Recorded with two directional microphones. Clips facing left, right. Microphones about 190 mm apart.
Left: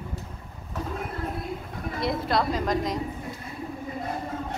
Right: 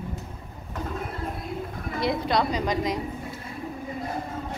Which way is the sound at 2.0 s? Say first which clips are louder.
Right 1 dB; centre (ahead or behind).